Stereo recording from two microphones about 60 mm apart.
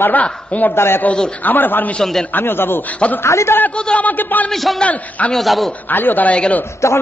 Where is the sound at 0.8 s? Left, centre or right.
Left.